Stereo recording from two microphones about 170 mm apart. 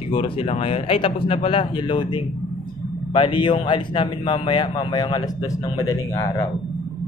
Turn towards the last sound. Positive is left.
turn(degrees=20)  # may be behind; listen again after turning